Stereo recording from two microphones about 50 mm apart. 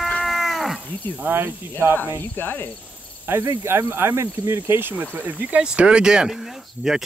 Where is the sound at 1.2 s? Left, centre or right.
Right.